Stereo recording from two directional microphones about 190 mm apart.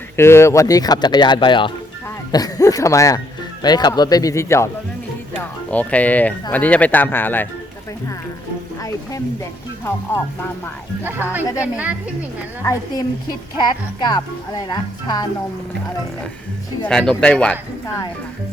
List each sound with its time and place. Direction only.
0.2 s speech: 15° left (ahead or behind)
5.7 s speech: 10° left (ahead or behind)
8.8 s speech: 15° left (ahead or behind)
11.0 s a woman's voice: 10° right (ahead or behind)
12.6 s speech: 20° left (ahead or behind)
16.8 s speech: 5° left (ahead or behind)
17.8 s speech: 20° left (ahead or behind)